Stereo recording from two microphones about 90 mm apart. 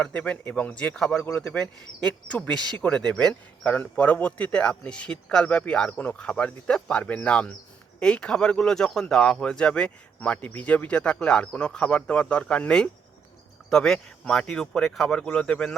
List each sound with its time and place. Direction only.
0.0 s speech: 15° left (ahead or behind)
1.2 s speech: 20° left (ahead or behind)